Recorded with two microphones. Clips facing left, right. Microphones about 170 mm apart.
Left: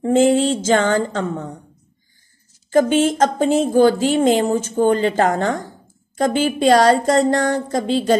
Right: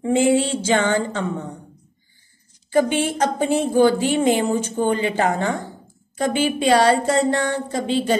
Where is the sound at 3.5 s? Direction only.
50° left (ahead or behind).